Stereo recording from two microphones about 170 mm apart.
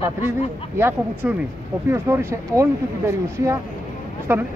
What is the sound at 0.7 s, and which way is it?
Speech, 15° right (ahead or behind).